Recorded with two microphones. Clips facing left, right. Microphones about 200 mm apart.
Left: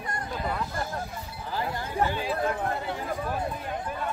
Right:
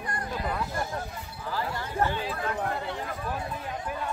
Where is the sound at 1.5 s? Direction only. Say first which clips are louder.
Left 1 dB; 15° left (ahead or behind).